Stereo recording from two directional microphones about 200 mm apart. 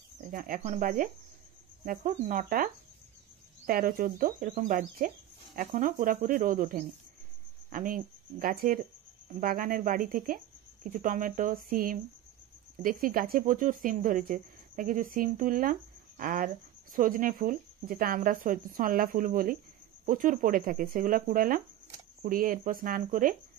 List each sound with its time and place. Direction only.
0.3 s speech: 45° right (ahead or behind)